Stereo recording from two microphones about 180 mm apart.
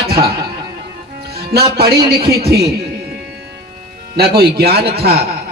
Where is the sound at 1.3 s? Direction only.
60° right (ahead or behind).